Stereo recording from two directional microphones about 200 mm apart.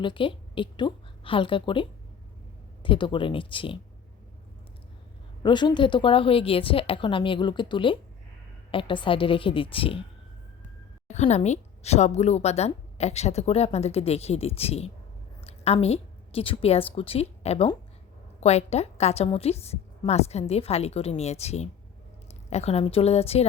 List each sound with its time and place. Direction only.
0.0 s a woman's voice: 25° left (ahead or behind)
5.4 s a woman's voice: 20° left (ahead or behind)
11.1 s a woman's voice: 35° left (ahead or behind)